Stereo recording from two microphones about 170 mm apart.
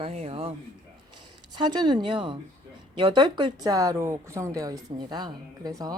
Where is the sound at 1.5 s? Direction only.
25° right (ahead or behind).